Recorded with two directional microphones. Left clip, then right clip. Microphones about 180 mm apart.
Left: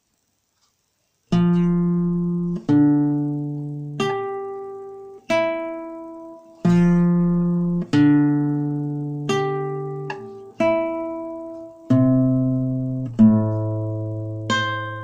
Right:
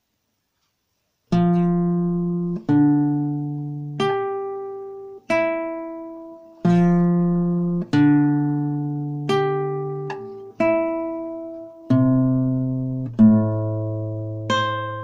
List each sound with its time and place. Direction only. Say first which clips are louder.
1.3 s music: right 1 dB; 25° right (ahead or behind)
2.5 s music: left 1 dB; 30° right (ahead or behind)
7.9 s music: left 1 dB; 25° right (ahead or behind)
10.6 s guitar: even; 25° right (ahead or behind)
11.9 s music: left 1 dB; 20° right (ahead or behind)